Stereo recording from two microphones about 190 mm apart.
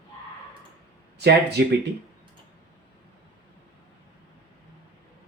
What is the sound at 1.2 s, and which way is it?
Speech, 60° right (ahead or behind).